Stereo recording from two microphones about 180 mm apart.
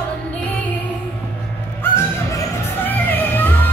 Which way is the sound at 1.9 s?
15° left (ahead or behind).